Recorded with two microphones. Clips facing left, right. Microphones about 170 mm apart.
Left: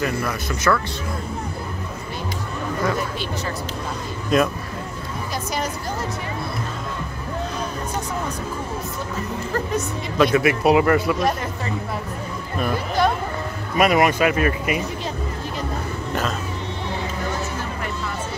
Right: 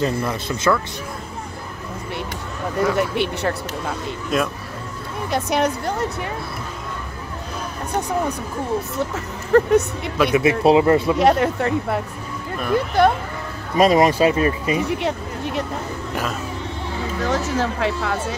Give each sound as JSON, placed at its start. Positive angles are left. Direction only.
{"t": 0.0, "sound": "speech", "side_deg": -25}
{"t": 2.8, "sound": "speech", "side_deg": -70}
{"t": 4.3, "sound": "speech", "side_deg": -5}
{"t": 5.3, "sound": "a woman's voice", "side_deg": -65}
{"t": 8.9, "sound": "a woman's voice", "side_deg": -70}
{"t": 10.3, "sound": "speech", "side_deg": -25}
{"t": 11.1, "sound": "a woman's voice", "side_deg": -70}
{"t": 13.7, "sound": "speech", "side_deg": -30}
{"t": 14.8, "sound": "speech", "side_deg": -70}
{"t": 17.2, "sound": "speech", "side_deg": -90}